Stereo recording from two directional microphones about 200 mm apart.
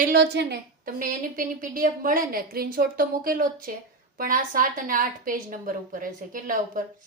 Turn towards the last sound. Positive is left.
turn(degrees=-45)  # may be behind; listen again after turning